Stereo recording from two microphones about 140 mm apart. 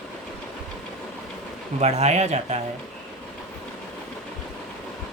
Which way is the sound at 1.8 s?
50° right (ahead or behind).